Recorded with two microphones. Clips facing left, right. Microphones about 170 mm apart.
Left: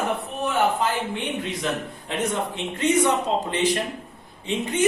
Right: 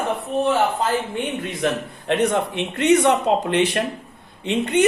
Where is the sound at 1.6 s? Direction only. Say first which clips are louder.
Right 5 dB; 65° right (ahead or behind).